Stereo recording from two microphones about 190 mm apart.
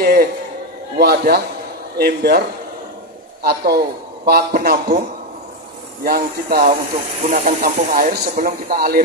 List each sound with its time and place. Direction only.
0.0 s a sound: 50° right (ahead or behind)
0.9 s speech: 55° right (ahead or behind)
3.4 s speech: 55° right (ahead or behind)
6.0 s speech: 50° right (ahead or behind)